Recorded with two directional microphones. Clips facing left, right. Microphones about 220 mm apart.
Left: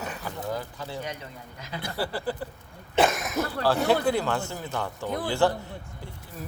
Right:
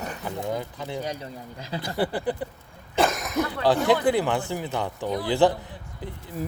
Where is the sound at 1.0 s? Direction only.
35° right (ahead or behind).